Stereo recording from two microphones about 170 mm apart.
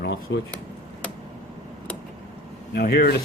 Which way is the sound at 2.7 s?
65° left (ahead or behind).